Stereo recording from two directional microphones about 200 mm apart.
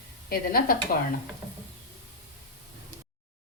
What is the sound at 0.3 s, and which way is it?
Speech, 50° left (ahead or behind).